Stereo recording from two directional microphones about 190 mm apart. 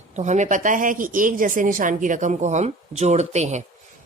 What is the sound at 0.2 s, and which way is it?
Speech, 40° right (ahead or behind).